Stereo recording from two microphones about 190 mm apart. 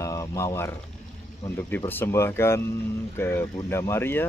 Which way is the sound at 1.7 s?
10° left (ahead or behind).